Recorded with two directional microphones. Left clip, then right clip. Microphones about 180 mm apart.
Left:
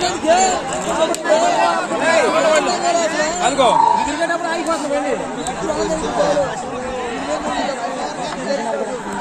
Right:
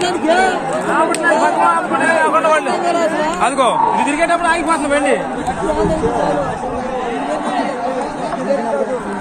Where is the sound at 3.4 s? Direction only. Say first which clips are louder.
Left 1 dB; 15° right (ahead or behind).